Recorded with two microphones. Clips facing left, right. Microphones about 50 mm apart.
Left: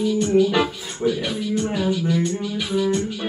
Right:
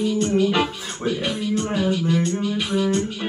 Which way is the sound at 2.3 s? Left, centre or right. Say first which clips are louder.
Right 1 dB; right.